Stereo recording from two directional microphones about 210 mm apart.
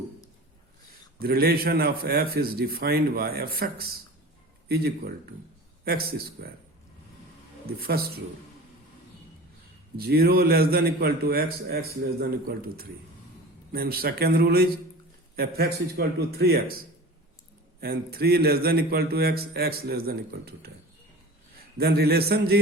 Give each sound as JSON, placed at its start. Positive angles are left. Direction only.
{"t": 1.2, "sound": "a man's voice", "side_deg": -45}
{"t": 7.8, "sound": "a man's voice", "side_deg": -45}
{"t": 10.0, "sound": "a man's voice", "side_deg": -45}
{"t": 17.7, "sound": "a man's voice", "side_deg": -45}
{"t": 21.8, "sound": "a man's voice", "side_deg": -50}